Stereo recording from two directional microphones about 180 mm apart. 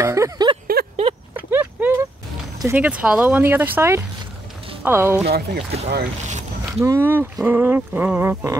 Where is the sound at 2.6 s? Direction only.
10° right (ahead or behind).